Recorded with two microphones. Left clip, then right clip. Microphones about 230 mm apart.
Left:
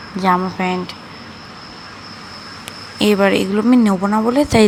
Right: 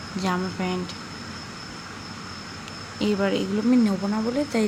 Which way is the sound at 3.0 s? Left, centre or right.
Left.